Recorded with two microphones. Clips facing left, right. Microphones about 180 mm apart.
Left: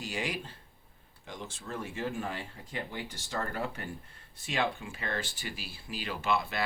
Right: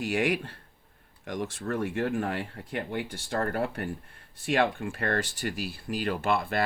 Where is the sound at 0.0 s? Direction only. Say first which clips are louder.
Right 9 dB; 60° right (ahead or behind).